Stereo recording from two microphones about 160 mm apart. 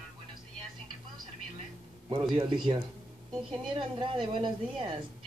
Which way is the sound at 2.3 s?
30° right (ahead or behind).